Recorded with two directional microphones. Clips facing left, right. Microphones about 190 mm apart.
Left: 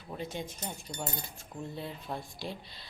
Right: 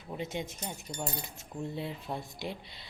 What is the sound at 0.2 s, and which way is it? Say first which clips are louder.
Speech: right 2 dB; 25° right (ahead or behind).